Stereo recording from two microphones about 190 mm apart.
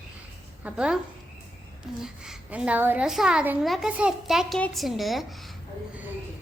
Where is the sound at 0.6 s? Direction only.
5° right (ahead or behind).